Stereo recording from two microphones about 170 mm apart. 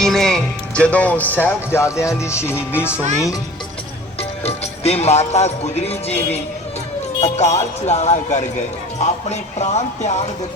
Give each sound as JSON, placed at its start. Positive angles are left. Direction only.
{"t": 0.0, "sound": "speech", "side_deg": 0}
{"t": 4.2, "sound": "music", "side_deg": 40}